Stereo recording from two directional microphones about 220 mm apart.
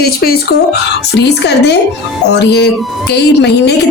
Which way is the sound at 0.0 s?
45° left (ahead or behind).